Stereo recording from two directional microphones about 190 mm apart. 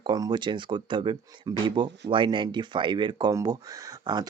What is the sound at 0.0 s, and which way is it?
Speech, 20° right (ahead or behind).